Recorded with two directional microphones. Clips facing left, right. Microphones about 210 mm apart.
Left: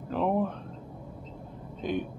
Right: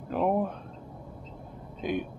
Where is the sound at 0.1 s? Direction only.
10° right (ahead or behind).